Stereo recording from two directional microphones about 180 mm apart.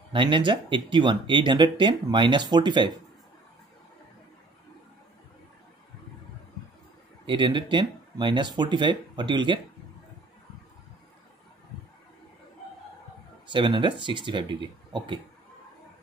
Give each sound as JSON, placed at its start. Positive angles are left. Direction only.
{"t": 0.1, "sound": "speech", "side_deg": -25}
{"t": 7.2, "sound": "speech", "side_deg": -25}
{"t": 13.5, "sound": "speech", "side_deg": -25}